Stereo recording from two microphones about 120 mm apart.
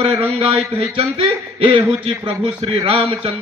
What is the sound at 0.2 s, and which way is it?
A man's voice, 50° right (ahead or behind).